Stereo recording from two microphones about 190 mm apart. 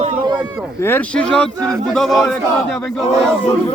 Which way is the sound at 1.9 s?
Centre (ahead or behind).